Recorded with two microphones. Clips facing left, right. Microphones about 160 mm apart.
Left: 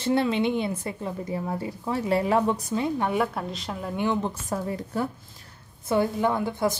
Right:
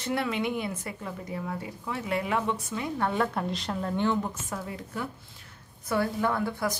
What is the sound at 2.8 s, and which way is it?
Speech, 15° left (ahead or behind).